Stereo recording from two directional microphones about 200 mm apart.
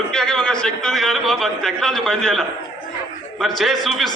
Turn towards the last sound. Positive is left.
turn(degrees=0)  # may be behind; listen again after turning